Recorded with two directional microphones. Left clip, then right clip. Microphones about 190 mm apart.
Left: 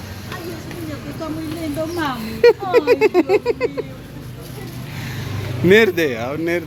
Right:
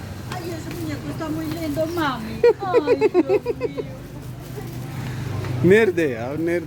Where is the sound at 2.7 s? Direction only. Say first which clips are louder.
Left 3 dB; 5° right (ahead or behind).